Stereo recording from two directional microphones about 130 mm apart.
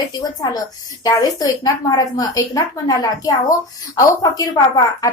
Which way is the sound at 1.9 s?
25° left (ahead or behind).